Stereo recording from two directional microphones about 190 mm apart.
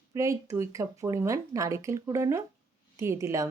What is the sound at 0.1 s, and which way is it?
Speech, 15° right (ahead or behind).